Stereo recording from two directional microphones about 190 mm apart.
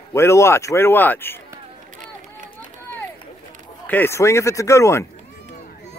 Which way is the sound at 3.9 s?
10° left (ahead or behind).